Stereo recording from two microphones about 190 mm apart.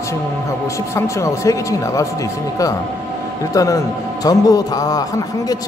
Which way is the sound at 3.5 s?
15° left (ahead or behind).